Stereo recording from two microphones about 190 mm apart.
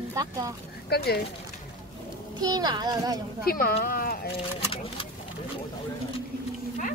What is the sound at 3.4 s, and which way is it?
Speech, 50° left (ahead or behind).